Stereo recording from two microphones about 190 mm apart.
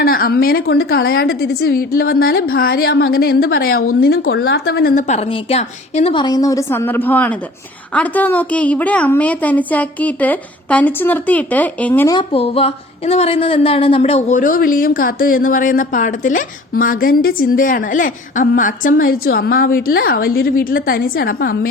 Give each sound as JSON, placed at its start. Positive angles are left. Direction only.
{"t": 0.0, "sound": "a woman's voice", "side_deg": 50}
{"t": 4.4, "sound": "a woman's voice", "side_deg": 75}
{"t": 12.1, "sound": "a woman's voice", "side_deg": 30}